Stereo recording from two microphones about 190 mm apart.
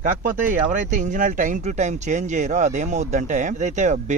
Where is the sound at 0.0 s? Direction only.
45° right (ahead or behind).